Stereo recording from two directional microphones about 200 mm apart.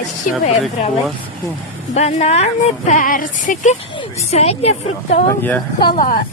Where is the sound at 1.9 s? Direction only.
35° left (ahead or behind).